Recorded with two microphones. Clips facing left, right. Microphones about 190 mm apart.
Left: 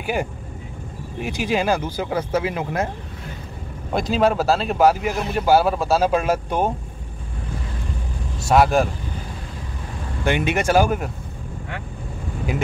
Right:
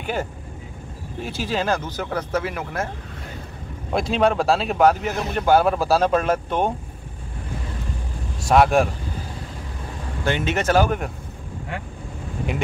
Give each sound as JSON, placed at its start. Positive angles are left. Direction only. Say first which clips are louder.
{"t": 0.0, "sound": "speech", "louder": "left 2 dB", "side_deg": 10}
{"t": 3.9, "sound": "speech", "louder": "left 1 dB", "side_deg": 0}
{"t": 8.5, "sound": "speech", "louder": "even", "side_deg": 0}
{"t": 10.2, "sound": "speech", "louder": "left 2 dB", "side_deg": 15}